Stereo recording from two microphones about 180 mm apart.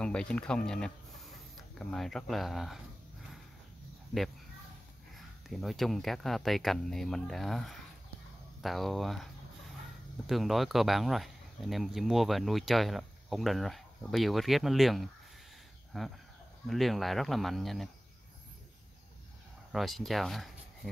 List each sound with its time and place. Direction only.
0.0 s speech: 5° left (ahead or behind)
5.1 s speech: centre (ahead or behind)
19.7 s speech: centre (ahead or behind)